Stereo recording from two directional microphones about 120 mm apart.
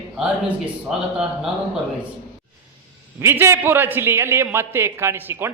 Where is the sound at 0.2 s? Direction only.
10° right (ahead or behind).